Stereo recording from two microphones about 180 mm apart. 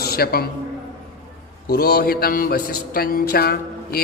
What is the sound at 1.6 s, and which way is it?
A man's voice, 60° left (ahead or behind).